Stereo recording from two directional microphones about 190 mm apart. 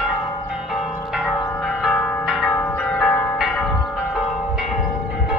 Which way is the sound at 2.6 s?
10° left (ahead or behind).